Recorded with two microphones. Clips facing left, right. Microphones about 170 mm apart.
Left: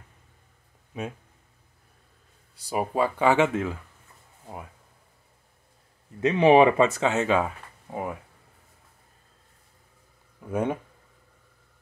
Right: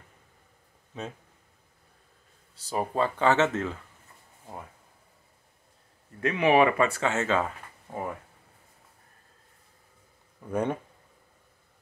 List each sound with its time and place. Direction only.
0.9 s speech: 10° left (ahead or behind)
2.5 s speech: 10° left (ahead or behind)
6.2 s speech: 25° left (ahead or behind); by 8.2 s 10° left (ahead or behind)
10.5 s speech: 5° left (ahead or behind)